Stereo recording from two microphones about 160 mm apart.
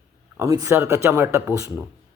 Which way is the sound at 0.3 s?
20° right (ahead or behind).